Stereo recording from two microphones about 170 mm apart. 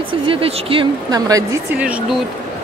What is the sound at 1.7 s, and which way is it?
Speech, 5° right (ahead or behind).